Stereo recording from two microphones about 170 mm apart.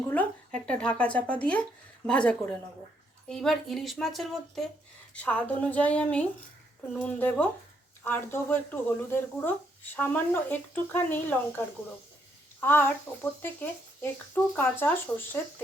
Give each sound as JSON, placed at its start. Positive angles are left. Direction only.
{"t": 0.1, "sound": "speech", "side_deg": 5}
{"t": 12.5, "sound": "a sound", "side_deg": 10}
{"t": 13.1, "sound": "speech", "side_deg": 15}